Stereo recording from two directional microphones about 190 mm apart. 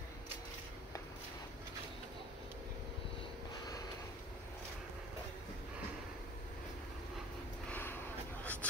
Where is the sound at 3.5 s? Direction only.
20° left (ahead or behind).